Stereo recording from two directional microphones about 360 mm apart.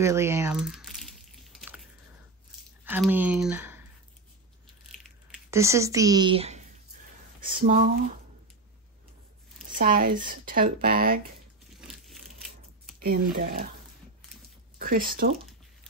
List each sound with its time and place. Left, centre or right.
0.0 s a sound: centre
2.8 s speech: centre
4.9 s a sound: centre
7.3 s speech: right
9.8 s speech: right
13.0 s speech: right
14.8 s speech: right